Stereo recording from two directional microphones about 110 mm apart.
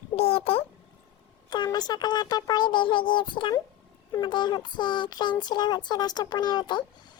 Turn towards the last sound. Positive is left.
turn(degrees=40)  # may be behind; listen again after turning